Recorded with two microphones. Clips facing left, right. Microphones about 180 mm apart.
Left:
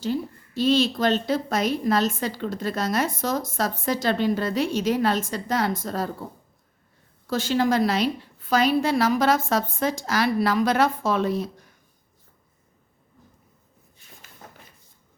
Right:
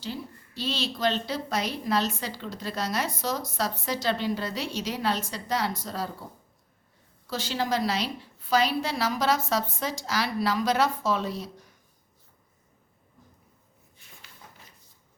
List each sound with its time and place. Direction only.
0.0 s a woman's voice: 50° left (ahead or behind)
7.3 s a woman's voice: 50° left (ahead or behind)